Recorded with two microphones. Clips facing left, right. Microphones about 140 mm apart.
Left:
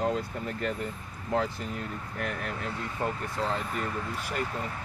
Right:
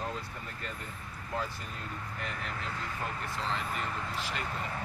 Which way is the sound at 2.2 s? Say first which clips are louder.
Left 7 dB; 60° left (ahead or behind).